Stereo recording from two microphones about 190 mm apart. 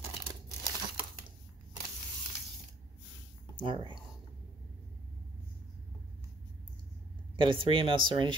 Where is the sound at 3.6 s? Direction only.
25° right (ahead or behind).